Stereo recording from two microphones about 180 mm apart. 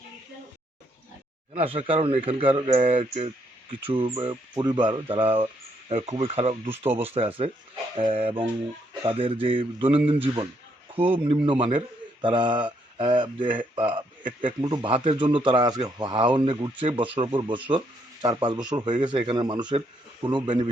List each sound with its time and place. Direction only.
1.5 s speech: 30° right (ahead or behind)